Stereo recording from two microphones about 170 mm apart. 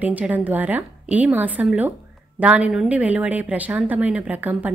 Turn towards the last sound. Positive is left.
turn(degrees=-10)  # may be behind; listen again after turning